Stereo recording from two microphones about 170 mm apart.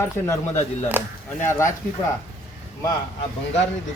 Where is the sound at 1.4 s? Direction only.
15° left (ahead or behind).